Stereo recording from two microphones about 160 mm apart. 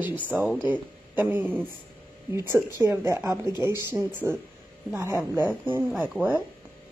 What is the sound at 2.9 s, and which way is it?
Speech, 15° right (ahead or behind).